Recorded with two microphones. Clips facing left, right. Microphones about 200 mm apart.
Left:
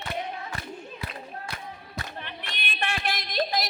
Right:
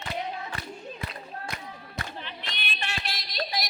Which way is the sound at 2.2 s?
55° left (ahead or behind).